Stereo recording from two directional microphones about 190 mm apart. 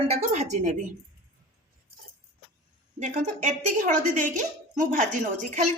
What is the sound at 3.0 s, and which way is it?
A woman's voice, 40° right (ahead or behind).